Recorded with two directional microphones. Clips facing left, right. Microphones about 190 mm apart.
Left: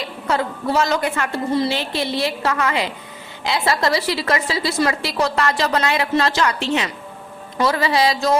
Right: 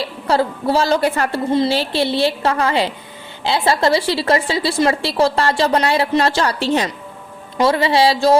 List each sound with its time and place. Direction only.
0.0 s a woman's voice: 30° right (ahead or behind)